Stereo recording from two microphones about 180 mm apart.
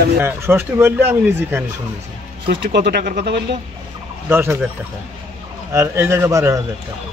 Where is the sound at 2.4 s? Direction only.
65° right (ahead or behind).